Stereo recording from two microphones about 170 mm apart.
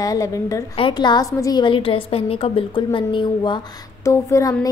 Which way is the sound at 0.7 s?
30° left (ahead or behind).